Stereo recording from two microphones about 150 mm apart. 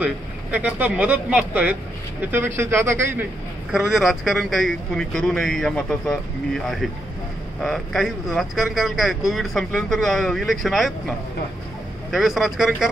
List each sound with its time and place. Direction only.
0.0 s speech: 10° right (ahead or behind)
3.7 s speech: 5° right (ahead or behind)